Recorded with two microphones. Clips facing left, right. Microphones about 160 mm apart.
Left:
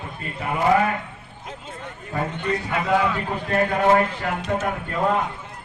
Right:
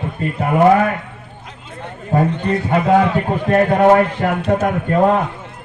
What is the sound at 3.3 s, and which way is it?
A man's voice, 50° right (ahead or behind).